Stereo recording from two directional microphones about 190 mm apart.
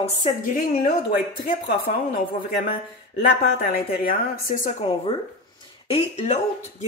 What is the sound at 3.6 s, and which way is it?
A woman's voice, 45° left (ahead or behind).